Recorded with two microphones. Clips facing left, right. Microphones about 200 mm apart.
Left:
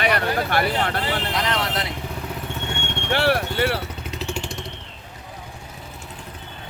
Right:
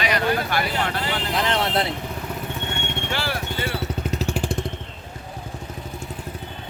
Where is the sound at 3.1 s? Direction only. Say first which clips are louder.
Left 11 dB; 65° left (ahead or behind).